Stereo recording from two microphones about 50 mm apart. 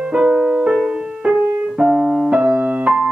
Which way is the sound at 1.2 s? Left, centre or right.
Right.